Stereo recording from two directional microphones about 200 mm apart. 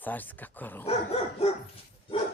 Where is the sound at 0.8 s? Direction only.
30° left (ahead or behind).